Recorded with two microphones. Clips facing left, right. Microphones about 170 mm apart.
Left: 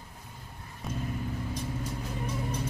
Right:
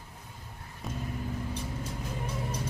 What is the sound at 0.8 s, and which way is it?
Vehicle, centre (ahead or behind).